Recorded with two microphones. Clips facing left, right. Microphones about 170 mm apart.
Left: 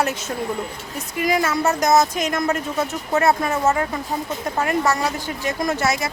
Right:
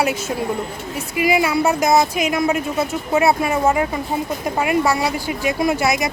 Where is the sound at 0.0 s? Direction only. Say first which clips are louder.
Right 3 dB; 10° right (ahead or behind).